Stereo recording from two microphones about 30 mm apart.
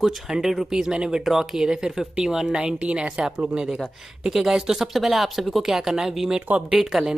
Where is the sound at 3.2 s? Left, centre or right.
Right.